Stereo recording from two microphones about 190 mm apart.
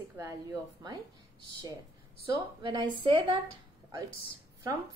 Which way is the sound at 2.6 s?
25° right (ahead or behind).